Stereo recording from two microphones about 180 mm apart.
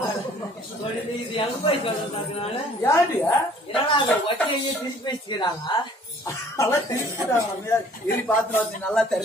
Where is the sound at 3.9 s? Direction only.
30° left (ahead or behind).